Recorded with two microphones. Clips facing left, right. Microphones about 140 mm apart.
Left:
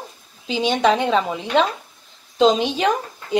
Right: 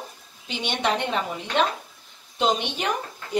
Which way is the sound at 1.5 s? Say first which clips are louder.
Left 4 dB; 90° left.